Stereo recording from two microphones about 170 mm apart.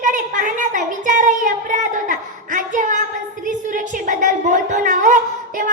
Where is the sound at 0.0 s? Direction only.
50° right (ahead or behind).